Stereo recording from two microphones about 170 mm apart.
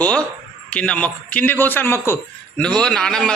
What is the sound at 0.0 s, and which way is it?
A man's voice, 5° left (ahead or behind).